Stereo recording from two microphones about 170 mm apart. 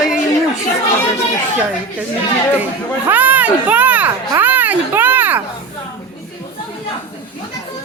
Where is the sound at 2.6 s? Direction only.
10° right (ahead or behind).